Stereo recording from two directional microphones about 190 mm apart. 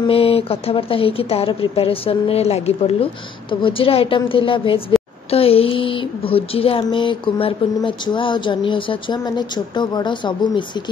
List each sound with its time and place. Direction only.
0.0 s speech: 30° left (ahead or behind)